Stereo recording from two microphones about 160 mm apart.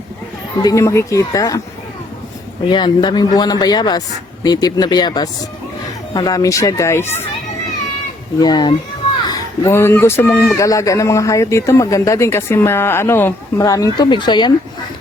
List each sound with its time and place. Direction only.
0.5 s speech: 20° left (ahead or behind)
2.6 s speech: 30° left (ahead or behind)
8.4 s speech: 25° left (ahead or behind)